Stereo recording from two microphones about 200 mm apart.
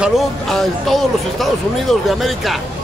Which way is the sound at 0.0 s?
Centre (ahead or behind).